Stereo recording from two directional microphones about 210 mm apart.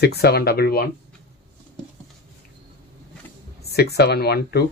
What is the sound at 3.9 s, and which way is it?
Speech, 50° left (ahead or behind).